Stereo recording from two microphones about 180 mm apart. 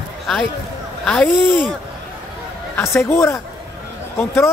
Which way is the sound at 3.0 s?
15° left (ahead or behind).